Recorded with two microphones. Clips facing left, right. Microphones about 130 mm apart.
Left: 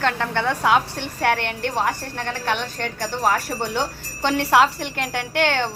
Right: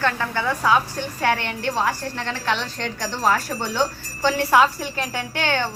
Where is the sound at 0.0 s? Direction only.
60° left (ahead or behind).